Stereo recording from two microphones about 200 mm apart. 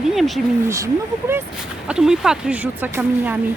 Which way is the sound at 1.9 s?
5° right (ahead or behind).